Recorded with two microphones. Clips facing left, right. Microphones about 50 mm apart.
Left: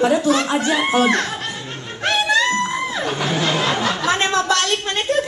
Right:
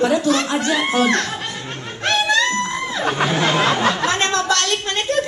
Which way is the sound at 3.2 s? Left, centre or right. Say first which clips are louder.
Right 3 dB; centre.